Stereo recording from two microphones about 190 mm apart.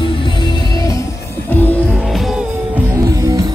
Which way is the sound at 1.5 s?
10° left (ahead or behind).